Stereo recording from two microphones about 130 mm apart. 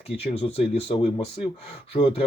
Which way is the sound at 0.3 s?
50° left (ahead or behind).